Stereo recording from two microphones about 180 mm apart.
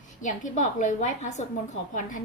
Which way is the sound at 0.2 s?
45° left (ahead or behind).